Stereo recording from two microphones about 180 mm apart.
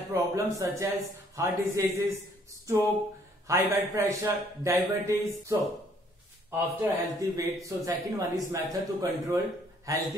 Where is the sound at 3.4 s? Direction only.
15° right (ahead or behind).